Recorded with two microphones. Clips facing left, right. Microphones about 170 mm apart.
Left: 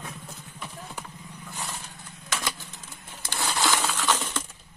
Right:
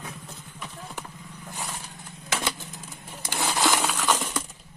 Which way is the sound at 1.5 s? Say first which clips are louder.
Right 1 dB; 15° right (ahead or behind).